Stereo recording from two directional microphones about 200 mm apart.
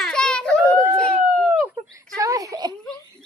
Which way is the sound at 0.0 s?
5° left (ahead or behind).